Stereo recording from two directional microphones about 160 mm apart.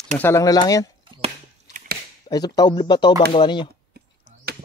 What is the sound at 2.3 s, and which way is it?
Speech, 25° left (ahead or behind).